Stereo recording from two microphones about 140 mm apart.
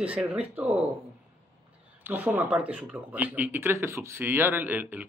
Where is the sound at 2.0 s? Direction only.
15° right (ahead or behind).